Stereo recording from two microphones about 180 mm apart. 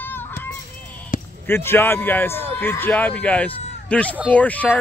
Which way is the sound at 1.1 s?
45° left (ahead or behind).